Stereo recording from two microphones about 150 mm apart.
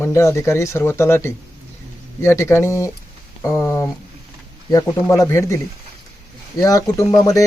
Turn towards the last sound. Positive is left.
turn(degrees=20)  # may be behind; listen again after turning